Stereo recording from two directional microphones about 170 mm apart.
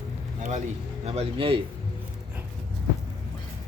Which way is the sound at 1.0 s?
35° right (ahead or behind).